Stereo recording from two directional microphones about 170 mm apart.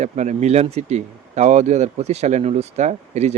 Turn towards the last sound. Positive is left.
turn(degrees=-40)  # may be behind; listen again after turning